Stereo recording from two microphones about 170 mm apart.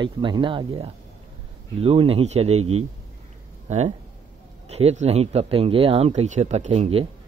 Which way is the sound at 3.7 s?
45° right (ahead or behind).